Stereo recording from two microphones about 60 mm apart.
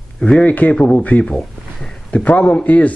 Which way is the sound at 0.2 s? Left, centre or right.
Centre.